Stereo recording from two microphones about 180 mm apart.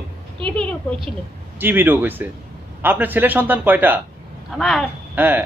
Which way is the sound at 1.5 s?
10° right (ahead or behind).